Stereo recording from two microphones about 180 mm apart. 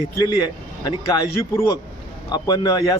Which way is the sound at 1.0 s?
20° left (ahead or behind).